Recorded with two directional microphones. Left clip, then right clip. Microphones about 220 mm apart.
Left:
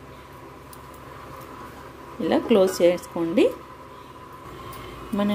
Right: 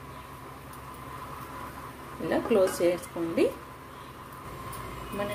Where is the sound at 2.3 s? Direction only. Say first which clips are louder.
Left 5 dB; 40° left (ahead or behind).